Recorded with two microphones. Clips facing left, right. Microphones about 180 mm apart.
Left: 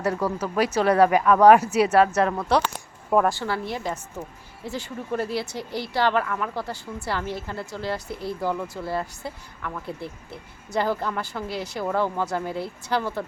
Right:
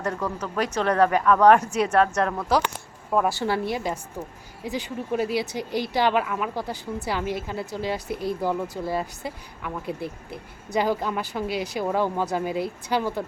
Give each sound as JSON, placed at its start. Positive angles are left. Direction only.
{"t": 0.0, "sound": "speech", "side_deg": 10}
{"t": 3.3, "sound": "speech", "side_deg": -15}